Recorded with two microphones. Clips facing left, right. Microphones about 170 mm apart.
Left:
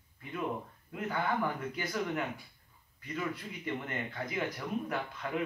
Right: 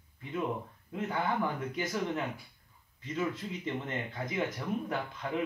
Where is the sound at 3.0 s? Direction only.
25° right (ahead or behind).